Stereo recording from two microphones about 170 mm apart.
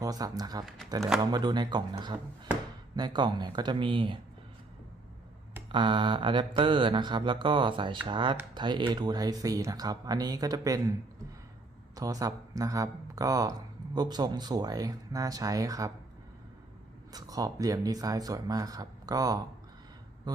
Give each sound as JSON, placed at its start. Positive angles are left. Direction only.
{"t": 0.0, "sound": "speech", "side_deg": -20}
{"t": 5.7, "sound": "speech", "side_deg": -30}
{"t": 11.9, "sound": "speech", "side_deg": -20}
{"t": 17.1, "sound": "speech", "side_deg": -20}